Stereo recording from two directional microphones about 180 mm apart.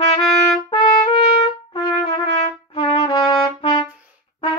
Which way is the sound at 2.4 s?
35° left (ahead or behind).